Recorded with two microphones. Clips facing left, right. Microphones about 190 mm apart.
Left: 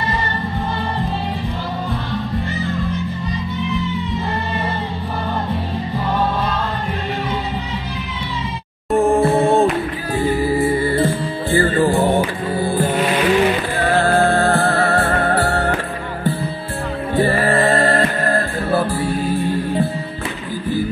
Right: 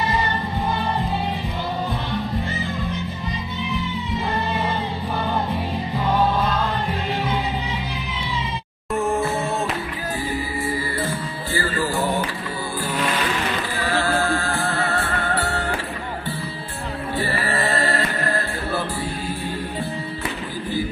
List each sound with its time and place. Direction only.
8.9 s music: 30° left (ahead or behind)
9.2 s music: 55° left (ahead or behind)
17.2 s music: 50° left (ahead or behind)